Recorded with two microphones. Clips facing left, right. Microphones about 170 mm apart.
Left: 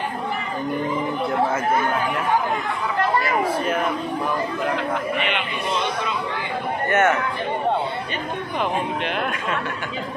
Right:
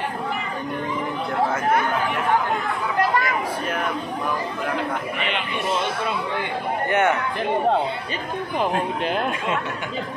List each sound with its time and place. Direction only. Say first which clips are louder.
6.9 s a man's voice: left 1 dB; 15° right (ahead or behind)
8.5 s speech: right 1 dB; 35° right (ahead or behind)